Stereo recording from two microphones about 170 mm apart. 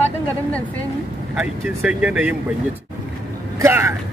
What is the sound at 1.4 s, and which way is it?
Speech, 5° right (ahead or behind).